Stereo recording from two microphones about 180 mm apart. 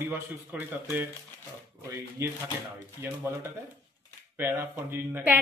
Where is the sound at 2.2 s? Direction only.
15° right (ahead or behind).